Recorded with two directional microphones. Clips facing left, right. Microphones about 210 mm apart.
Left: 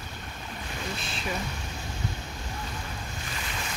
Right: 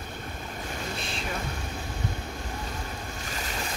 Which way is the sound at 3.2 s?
40° right (ahead or behind).